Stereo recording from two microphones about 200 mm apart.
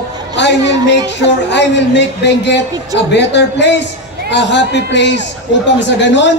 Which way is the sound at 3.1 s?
60° left (ahead or behind).